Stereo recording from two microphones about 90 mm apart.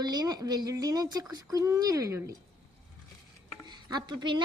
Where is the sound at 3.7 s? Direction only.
55° right (ahead or behind).